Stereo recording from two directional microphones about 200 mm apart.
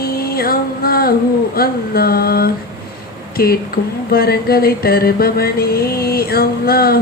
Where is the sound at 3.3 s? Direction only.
50° left (ahead or behind).